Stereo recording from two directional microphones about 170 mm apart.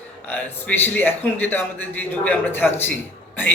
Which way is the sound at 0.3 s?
10° left (ahead or behind).